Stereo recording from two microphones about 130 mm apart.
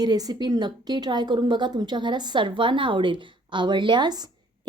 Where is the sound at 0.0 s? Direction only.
30° right (ahead or behind).